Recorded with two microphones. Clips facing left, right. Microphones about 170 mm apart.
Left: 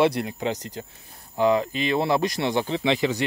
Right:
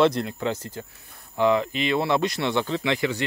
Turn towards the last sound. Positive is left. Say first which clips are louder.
# left 2 dB
turn(degrees=20)  # may be behind; listen again after turning